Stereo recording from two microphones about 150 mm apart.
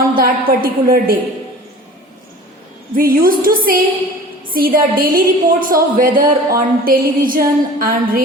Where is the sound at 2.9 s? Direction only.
70° right (ahead or behind).